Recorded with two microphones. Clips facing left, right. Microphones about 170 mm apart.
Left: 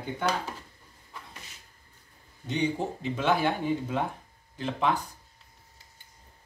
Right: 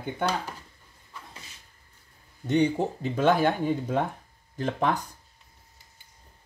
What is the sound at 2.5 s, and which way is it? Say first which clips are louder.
Speech: right 5 dB; 45° right (ahead or behind).